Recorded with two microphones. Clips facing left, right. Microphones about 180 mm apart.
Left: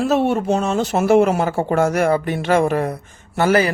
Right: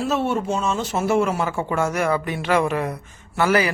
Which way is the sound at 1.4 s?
35° left (ahead or behind).